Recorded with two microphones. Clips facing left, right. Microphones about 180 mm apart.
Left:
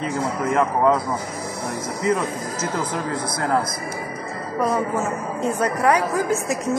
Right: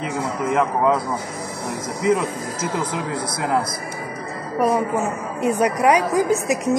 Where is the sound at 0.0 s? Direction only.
Centre (ahead or behind).